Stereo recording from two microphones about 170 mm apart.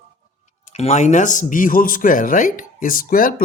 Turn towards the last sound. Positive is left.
turn(degrees=55)  # may be behind; listen again after turning